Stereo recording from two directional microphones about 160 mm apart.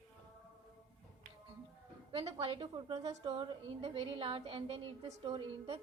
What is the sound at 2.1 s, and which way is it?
A woman's voice, 35° right (ahead or behind).